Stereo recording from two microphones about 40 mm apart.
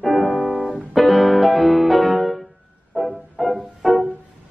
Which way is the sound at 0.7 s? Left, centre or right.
Centre.